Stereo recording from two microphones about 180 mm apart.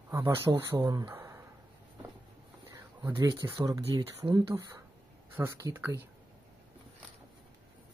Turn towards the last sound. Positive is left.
turn(degrees=-15)  # may be behind; listen again after turning